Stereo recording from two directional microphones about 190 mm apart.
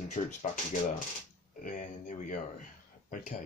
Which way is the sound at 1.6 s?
40° left (ahead or behind).